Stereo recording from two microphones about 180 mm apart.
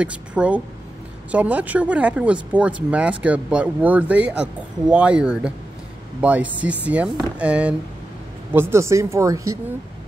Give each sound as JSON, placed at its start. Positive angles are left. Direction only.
{"t": 0.0, "sound": "speech", "side_deg": -5}